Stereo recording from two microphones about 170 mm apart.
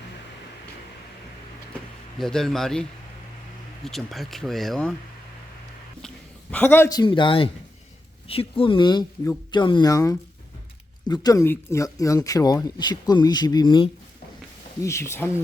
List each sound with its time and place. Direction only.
2.1 s speech: centre (ahead or behind)
3.8 s speech: centre (ahead or behind)
6.5 s speech: 10° left (ahead or behind); by 13.9 s 25° left (ahead or behind)
14.8 s speech: 15° left (ahead or behind)